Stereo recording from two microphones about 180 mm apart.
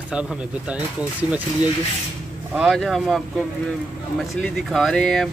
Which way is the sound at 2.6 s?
Centre (ahead or behind).